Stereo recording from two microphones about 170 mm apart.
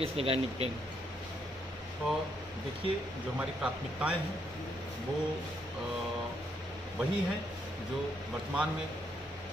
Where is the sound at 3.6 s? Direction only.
5° right (ahead or behind).